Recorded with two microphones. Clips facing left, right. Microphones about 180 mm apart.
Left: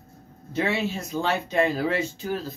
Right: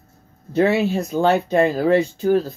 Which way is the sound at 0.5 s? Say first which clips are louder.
Right 9 dB; 50° right (ahead or behind).